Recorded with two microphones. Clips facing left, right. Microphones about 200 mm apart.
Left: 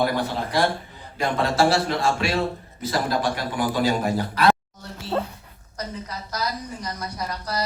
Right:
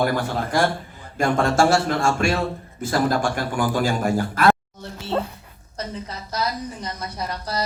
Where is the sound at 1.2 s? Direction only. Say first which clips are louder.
Right 2 dB; 45° right (ahead or behind).